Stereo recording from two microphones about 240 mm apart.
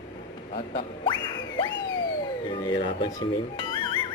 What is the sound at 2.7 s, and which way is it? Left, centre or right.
Speech, centre.